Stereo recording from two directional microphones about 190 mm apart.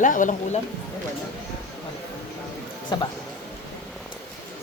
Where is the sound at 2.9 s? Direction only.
20° left (ahead or behind).